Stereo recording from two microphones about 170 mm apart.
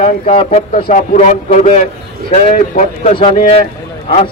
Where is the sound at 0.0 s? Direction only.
35° left (ahead or behind).